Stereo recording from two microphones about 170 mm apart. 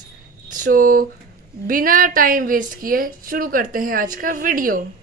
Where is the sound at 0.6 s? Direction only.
55° right (ahead or behind).